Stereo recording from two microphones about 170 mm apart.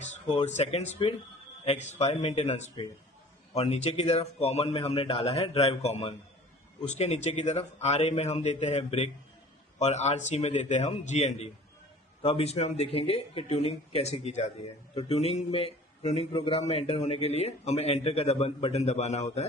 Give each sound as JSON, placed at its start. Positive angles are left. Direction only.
{"t": 0.4, "sound": "a man's voice", "side_deg": 40}